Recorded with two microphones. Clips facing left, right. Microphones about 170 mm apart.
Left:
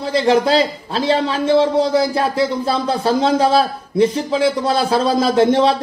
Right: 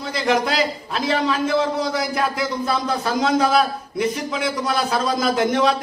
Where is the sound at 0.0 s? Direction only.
30° left (ahead or behind).